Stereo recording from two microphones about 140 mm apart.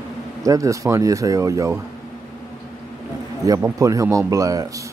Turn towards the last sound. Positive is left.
turn(degrees=-25)  # may be behind; listen again after turning